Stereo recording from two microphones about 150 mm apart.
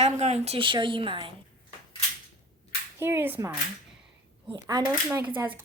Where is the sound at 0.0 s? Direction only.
45° right (ahead or behind).